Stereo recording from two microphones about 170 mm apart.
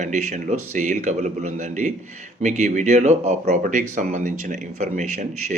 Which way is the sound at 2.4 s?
45° right (ahead or behind).